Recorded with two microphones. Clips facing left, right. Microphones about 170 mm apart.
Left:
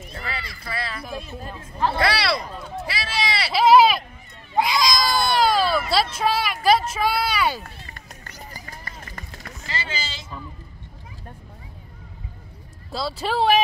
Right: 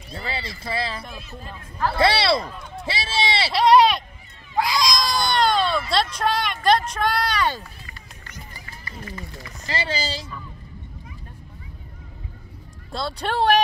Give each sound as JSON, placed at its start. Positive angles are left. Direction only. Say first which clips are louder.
{"t": 0.1, "sound": "speech", "louder": "right 4 dB", "side_deg": -30}
{"t": 1.0, "sound": "speech", "louder": "left 5 dB", "side_deg": 5}
{"t": 2.0, "sound": "speech", "louder": "right 6 dB", "side_deg": -25}
{"t": 3.5, "sound": "speech", "louder": "left 1 dB", "side_deg": 5}
{"t": 4.7, "sound": "a sound", "louder": "left 1 dB", "side_deg": 0}
{"t": 6.9, "sound": "speech", "louder": "even", "side_deg": 5}
{"t": 8.3, "sound": "run", "louder": "left 2 dB", "side_deg": 40}
{"t": 9.7, "sound": "speech", "louder": "right 5 dB", "side_deg": -35}
{"t": 12.9, "sound": "speech", "louder": "left 1 dB", "side_deg": 0}